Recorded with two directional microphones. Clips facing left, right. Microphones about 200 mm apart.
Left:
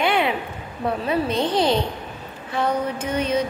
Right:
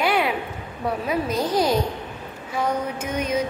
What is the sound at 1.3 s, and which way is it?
Speech, 30° left (ahead or behind).